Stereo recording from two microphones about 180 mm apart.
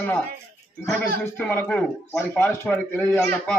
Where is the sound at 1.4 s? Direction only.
10° left (ahead or behind).